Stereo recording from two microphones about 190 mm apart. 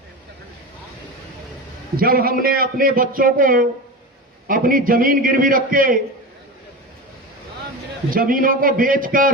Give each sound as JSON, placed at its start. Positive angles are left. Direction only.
{"t": 2.0, "sound": "a man's voice", "side_deg": -50}
{"t": 8.1, "sound": "a man's voice", "side_deg": -45}